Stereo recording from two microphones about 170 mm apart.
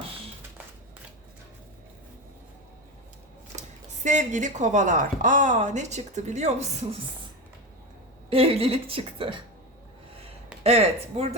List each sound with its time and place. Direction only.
4.0 s speech: 45° right (ahead or behind)
8.3 s a woman's voice: 35° right (ahead or behind)
10.2 s a sound: 35° right (ahead or behind)